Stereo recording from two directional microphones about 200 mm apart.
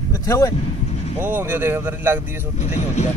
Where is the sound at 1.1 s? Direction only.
10° right (ahead or behind).